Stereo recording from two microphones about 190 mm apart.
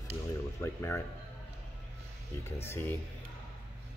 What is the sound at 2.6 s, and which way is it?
Speech, 10° left (ahead or behind).